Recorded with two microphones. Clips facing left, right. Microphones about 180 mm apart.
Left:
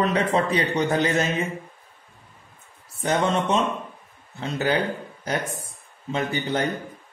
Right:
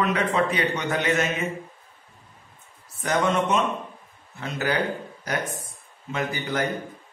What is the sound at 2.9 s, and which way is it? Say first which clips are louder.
A man's voice: even; 30° left (ahead or behind).